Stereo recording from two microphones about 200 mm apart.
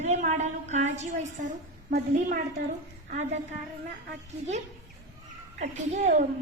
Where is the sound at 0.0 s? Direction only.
35° right (ahead or behind).